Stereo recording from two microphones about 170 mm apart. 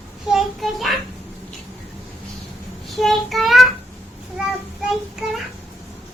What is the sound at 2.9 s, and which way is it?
Child singing, centre (ahead or behind).